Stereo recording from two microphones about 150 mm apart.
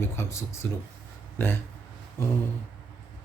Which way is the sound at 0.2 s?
20° left (ahead or behind).